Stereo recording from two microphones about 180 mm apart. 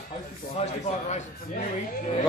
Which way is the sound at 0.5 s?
40° left (ahead or behind).